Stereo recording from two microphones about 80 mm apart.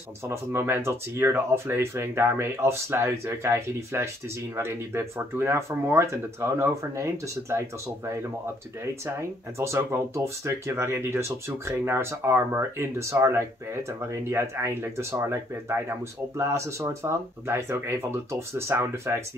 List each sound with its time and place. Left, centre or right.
0.3 s speech: right
9.6 s speech: right